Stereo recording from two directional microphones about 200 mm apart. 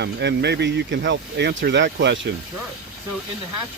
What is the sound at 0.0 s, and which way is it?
Speech, 60° right (ahead or behind).